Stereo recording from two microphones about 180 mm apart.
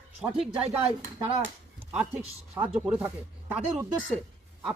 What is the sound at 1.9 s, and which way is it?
A man's voice, 10° right (ahead or behind).